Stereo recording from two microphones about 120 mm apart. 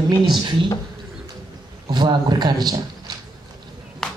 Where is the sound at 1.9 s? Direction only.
35° right (ahead or behind).